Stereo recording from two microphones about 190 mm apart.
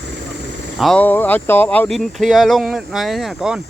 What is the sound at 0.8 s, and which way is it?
Speech, 5° left (ahead or behind).